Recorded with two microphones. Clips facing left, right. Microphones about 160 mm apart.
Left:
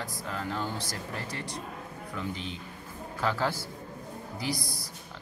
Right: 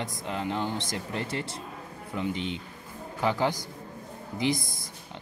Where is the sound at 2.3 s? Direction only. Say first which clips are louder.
Right 5 dB; 35° left (ahead or behind).